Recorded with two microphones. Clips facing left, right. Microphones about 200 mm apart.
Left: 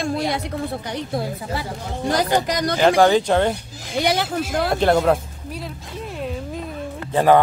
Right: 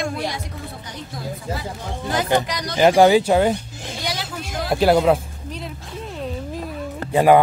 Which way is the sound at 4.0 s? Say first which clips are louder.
Left 9 dB; 60° left (ahead or behind).